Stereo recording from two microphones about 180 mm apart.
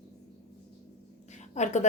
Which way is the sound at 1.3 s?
40° left (ahead or behind).